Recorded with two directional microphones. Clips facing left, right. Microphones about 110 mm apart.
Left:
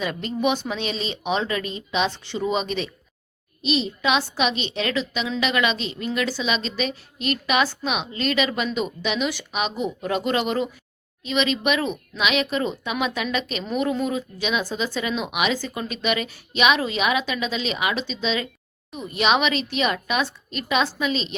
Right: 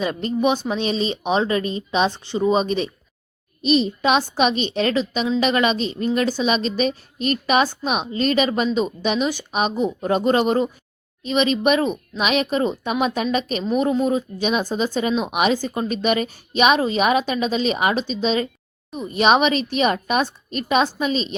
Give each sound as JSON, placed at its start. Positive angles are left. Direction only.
{"t": 0.0, "sound": "a woman's voice", "side_deg": -35}